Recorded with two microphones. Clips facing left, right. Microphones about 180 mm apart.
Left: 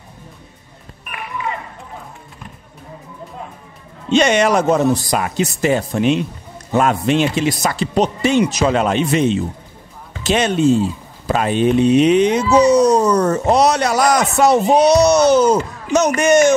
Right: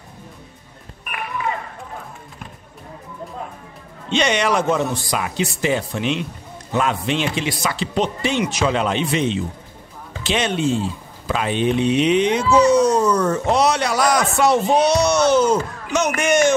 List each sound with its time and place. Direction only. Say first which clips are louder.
4.1 s speech: left 5 dB; 45° left (ahead or behind)